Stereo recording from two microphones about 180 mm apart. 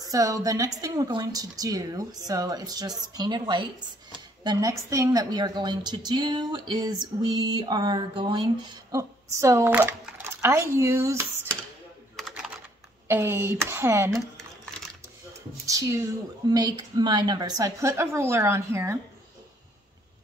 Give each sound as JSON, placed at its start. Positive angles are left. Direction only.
{"t": 0.0, "sound": "a woman's voice", "side_deg": -20}
{"t": 12.2, "sound": "typing", "side_deg": 0}
{"t": 13.1, "sound": "speech", "side_deg": -15}
{"t": 15.6, "sound": "a woman's voice", "side_deg": -20}